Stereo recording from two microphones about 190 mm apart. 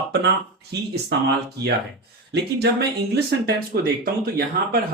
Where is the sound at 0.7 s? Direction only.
60° right (ahead or behind).